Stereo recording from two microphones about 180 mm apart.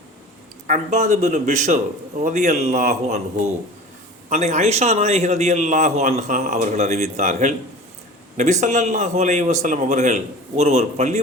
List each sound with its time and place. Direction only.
0.7 s a man's voice: 40° right (ahead or behind)